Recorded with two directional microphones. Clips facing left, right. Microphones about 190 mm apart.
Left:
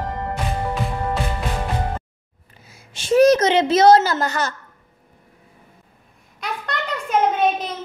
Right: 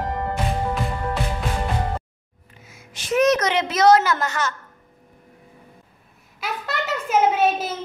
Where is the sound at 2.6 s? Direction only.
30° left (ahead or behind).